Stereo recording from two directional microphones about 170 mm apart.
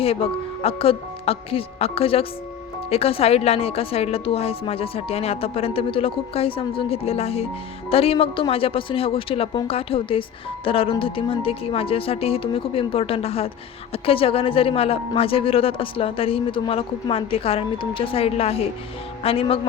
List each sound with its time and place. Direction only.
0.0 s speech: 35° left (ahead or behind)